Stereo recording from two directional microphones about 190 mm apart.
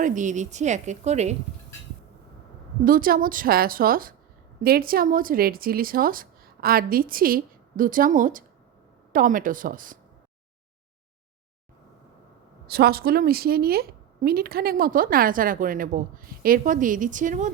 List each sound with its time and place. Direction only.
0.0 s a woman's voice: 40° right (ahead or behind)
2.8 s a woman's voice: 50° right (ahead or behind)
12.6 s a woman's voice: 55° right (ahead or behind)